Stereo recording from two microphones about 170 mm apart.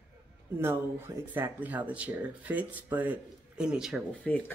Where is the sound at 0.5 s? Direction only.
15° right (ahead or behind).